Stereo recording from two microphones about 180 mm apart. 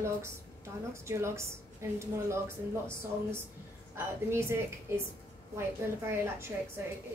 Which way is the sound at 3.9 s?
15° right (ahead or behind).